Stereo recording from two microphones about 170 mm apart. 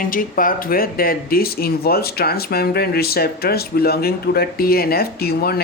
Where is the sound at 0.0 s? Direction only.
55° left (ahead or behind).